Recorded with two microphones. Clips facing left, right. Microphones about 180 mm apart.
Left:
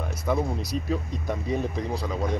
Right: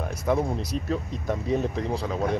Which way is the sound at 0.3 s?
Centre (ahead or behind).